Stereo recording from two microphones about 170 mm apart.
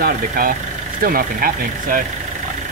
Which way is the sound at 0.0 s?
55° right (ahead or behind).